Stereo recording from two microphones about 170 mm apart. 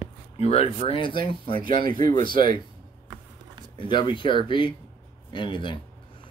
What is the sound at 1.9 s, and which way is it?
Speech, 55° right (ahead or behind).